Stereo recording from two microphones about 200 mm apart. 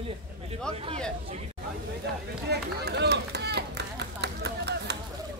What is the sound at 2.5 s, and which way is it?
Run, 55° right (ahead or behind).